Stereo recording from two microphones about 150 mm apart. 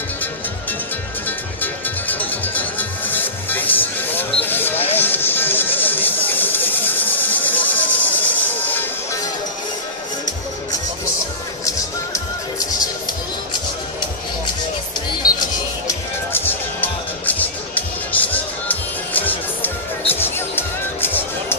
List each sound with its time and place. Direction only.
1.6 s music: 10° left (ahead or behind)
11.6 s music: 20° left (ahead or behind)
15.9 s music: 15° left (ahead or behind)